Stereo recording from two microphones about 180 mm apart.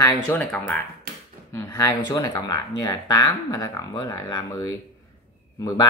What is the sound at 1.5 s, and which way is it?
Speech, 20° left (ahead or behind).